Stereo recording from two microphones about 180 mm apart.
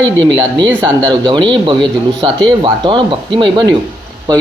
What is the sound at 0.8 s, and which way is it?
Speech, 25° right (ahead or behind).